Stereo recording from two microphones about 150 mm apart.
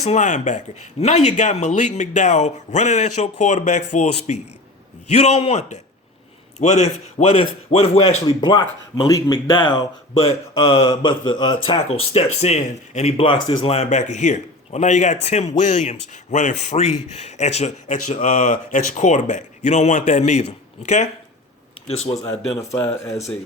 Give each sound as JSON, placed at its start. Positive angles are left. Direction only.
{"t": 0.0, "sound": "speech", "side_deg": 50}
{"t": 5.4, "sound": "speech", "side_deg": 45}
{"t": 22.8, "sound": "speech", "side_deg": 10}